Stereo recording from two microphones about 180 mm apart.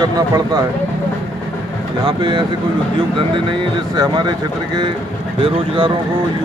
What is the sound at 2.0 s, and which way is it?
Speech, 25° right (ahead or behind).